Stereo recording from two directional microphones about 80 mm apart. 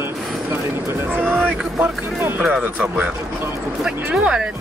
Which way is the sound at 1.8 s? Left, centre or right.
Right.